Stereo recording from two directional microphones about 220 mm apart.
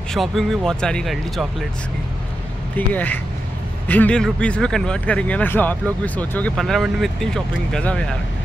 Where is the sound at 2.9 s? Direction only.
5° left (ahead or behind).